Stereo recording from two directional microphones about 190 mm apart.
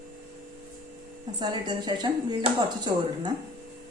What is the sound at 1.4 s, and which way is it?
Speech, 25° right (ahead or behind).